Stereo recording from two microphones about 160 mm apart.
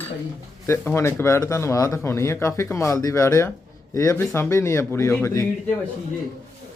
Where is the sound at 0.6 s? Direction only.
15° left (ahead or behind).